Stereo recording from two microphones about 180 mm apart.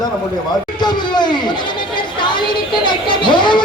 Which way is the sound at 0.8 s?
25° left (ahead or behind).